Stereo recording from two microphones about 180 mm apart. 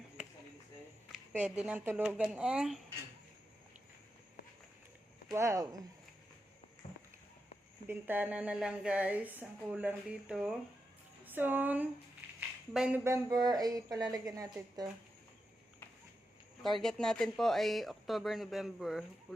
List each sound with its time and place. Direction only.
1.3 s speech: 10° right (ahead or behind)
5.3 s speech: 15° right (ahead or behind)
6.8 s a sound: 45° left (ahead or behind)
7.9 s speech: 10° right (ahead or behind)
12.4 s a sound: 5° right (ahead or behind)
13.1 s speech: 20° right (ahead or behind)
16.6 s speech: centre (ahead or behind)